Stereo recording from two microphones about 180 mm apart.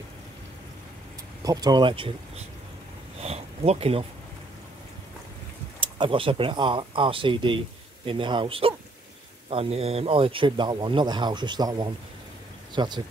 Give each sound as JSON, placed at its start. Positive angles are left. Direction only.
{"t": 1.4, "sound": "speech", "side_deg": -20}
{"t": 3.2, "sound": "a sound", "side_deg": -35}
{"t": 5.8, "sound": "speech", "side_deg": -30}